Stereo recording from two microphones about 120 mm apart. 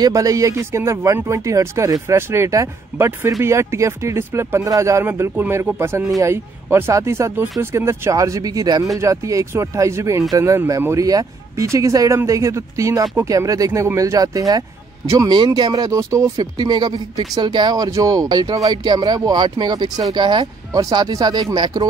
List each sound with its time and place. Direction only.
0.0 s speech: 30° right (ahead or behind)